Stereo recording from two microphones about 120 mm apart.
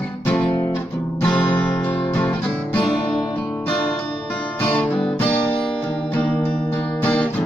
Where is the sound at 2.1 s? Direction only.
15° left (ahead or behind).